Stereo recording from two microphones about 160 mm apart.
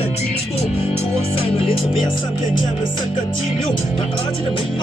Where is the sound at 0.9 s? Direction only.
35° left (ahead or behind).